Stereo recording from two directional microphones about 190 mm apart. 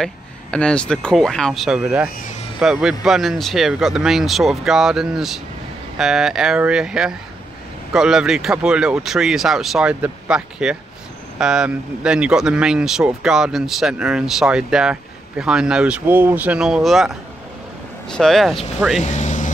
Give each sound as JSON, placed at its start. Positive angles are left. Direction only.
{"t": 0.0, "sound": "speech", "side_deg": 5}
{"t": 19.0, "sound": "vehicle", "side_deg": 40}